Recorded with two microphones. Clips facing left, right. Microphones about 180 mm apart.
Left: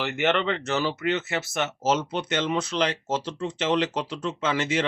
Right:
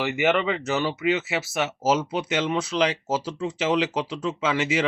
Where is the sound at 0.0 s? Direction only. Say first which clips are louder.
Right 2 dB; 5° right (ahead or behind).